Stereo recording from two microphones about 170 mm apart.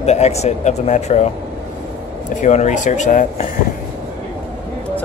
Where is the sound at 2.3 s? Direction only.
45° left (ahead or behind).